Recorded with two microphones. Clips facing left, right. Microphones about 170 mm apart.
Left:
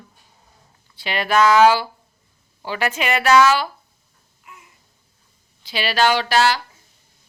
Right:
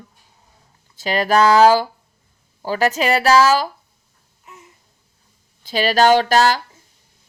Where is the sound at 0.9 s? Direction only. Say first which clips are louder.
Right 3 dB; 40° right (ahead or behind).